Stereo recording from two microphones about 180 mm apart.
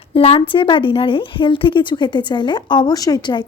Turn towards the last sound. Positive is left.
turn(degrees=25)  # may be behind; listen again after turning